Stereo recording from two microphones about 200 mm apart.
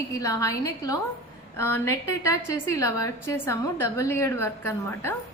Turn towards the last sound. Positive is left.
turn(degrees=10)  # may be behind; listen again after turning